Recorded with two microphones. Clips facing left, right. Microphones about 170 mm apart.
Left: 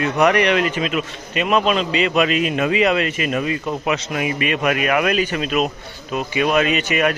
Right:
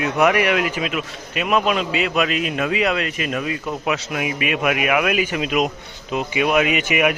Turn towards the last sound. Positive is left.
turn(degrees=-10)  # may be behind; listen again after turning